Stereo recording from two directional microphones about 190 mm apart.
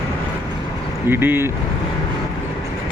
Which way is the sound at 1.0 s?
10° right (ahead or behind).